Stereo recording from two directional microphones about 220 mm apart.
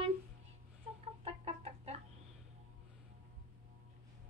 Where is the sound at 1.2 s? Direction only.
25° right (ahead or behind).